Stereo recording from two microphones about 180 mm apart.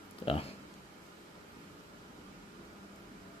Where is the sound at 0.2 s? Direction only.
30° left (ahead or behind).